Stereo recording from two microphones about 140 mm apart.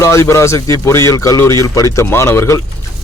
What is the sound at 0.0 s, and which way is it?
Speech, 20° left (ahead or behind).